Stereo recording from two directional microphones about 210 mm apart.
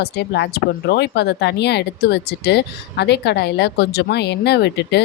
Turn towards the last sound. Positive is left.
turn(degrees=55)  # may be behind; listen again after turning